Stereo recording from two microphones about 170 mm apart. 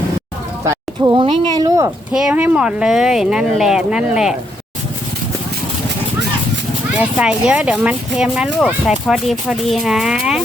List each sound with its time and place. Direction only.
0.6 s speech: 20° right (ahead or behind)
2.1 s speech: 5° right (ahead or behind)
7.0 s speech: 5° right (ahead or behind)